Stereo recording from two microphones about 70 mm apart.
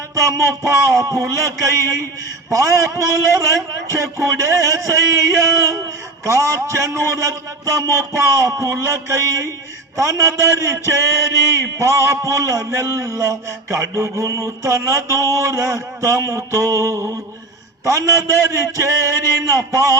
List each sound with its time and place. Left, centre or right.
0.2 s mantra: right